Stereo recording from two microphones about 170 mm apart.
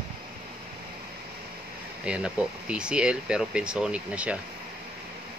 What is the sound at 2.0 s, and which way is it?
Speech, 5° right (ahead or behind).